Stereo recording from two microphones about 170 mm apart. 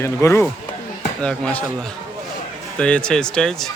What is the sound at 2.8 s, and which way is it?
Speech, 5° left (ahead or behind).